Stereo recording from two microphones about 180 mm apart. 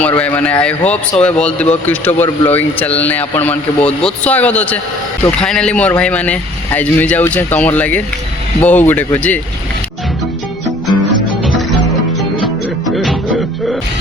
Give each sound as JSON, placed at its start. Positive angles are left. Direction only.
{"t": 0.0, "sound": "speech", "side_deg": 10}
{"t": 12.4, "sound": "music", "side_deg": 0}